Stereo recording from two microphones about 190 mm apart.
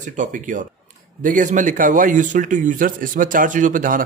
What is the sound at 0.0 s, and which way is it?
Speech, 40° right (ahead or behind).